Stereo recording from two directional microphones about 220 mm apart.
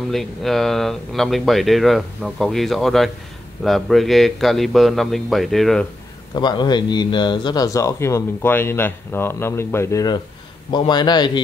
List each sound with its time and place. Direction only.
0.1 s speech: centre (ahead or behind)
6.3 s a man's voice: 20° left (ahead or behind)